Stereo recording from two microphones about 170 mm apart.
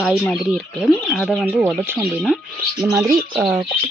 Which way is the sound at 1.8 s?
10° right (ahead or behind).